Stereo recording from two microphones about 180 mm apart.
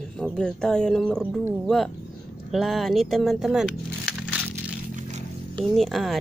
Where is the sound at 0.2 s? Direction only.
5° left (ahead or behind).